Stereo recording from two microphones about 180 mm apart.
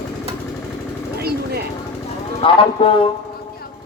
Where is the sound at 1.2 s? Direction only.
60° right (ahead or behind).